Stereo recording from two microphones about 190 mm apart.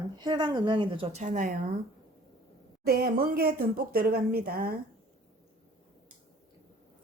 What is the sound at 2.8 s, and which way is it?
A woman's voice, 55° right (ahead or behind).